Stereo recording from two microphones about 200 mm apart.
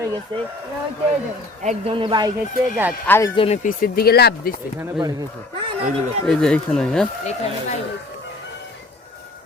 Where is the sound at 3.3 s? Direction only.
30° left (ahead or behind); by 4.5 s 50° left (ahead or behind).